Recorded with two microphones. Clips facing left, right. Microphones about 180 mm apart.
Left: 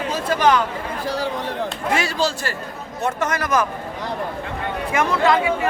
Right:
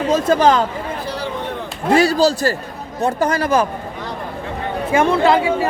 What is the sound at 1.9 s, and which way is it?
Speech, 35° right (ahead or behind).